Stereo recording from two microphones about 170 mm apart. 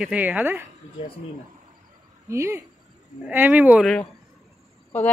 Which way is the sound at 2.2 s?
15° right (ahead or behind).